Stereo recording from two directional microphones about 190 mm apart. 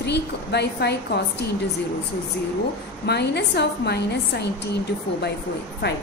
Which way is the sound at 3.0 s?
60° left (ahead or behind).